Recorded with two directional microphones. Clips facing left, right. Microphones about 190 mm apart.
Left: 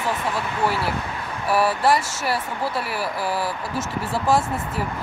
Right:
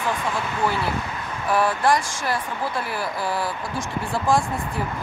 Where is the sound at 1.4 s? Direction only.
5° left (ahead or behind).